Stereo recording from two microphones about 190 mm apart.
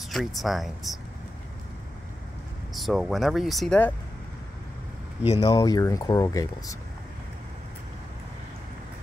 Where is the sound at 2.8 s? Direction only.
Centre (ahead or behind).